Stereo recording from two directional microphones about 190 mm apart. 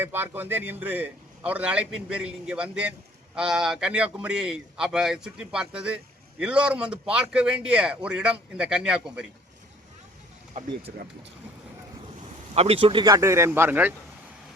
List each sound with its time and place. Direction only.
0.0 s a man's voice: 10° right (ahead or behind)
12.2 s speech: 35° right (ahead or behind); by 13.9 s 10° right (ahead or behind)